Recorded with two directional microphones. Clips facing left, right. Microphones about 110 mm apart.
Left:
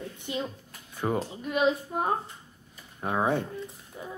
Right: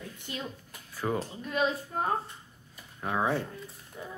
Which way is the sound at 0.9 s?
25° left (ahead or behind).